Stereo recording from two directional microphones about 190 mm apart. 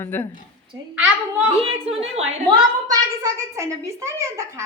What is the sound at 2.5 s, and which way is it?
A woman's voice, 20° right (ahead or behind).